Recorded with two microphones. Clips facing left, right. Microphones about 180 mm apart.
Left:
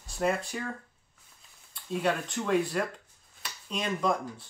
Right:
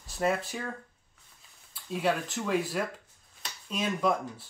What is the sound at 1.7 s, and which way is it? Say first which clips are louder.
Speech: even; centre (ahead or behind).